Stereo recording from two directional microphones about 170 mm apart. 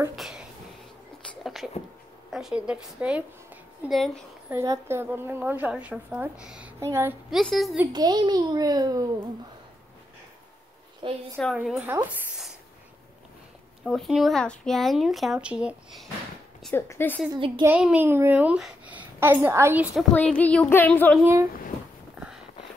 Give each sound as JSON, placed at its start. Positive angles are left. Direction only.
{"t": 0.1, "sound": "speech", "side_deg": -5}
{"t": 1.4, "sound": "a sound", "side_deg": 0}
{"t": 2.3, "sound": "speech", "side_deg": -5}
{"t": 4.5, "sound": "a woman's voice", "side_deg": -15}
{"t": 7.2, "sound": "speech", "side_deg": 0}
{"t": 7.8, "sound": "a child's voice", "side_deg": -25}
{"t": 11.0, "sound": "a woman's voice", "side_deg": -30}
{"t": 11.5, "sound": "a woman's voice", "side_deg": -5}
{"t": 13.8, "sound": "speech", "side_deg": 0}
{"t": 16.7, "sound": "speech", "side_deg": 15}
{"t": 17.6, "sound": "a woman's voice", "side_deg": -10}
{"t": 20.2, "sound": "speech", "side_deg": 10}
{"t": 21.2, "sound": "a woman's voice", "side_deg": -15}